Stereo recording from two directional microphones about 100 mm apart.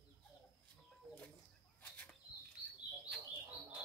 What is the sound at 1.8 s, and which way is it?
Chicken, 15° left (ahead or behind).